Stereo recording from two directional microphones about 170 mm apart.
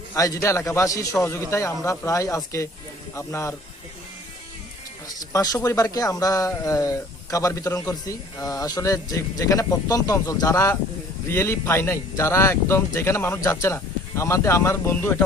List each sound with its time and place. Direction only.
0.1 s speech: 20° left (ahead or behind)
5.0 s speech: 20° left (ahead or behind)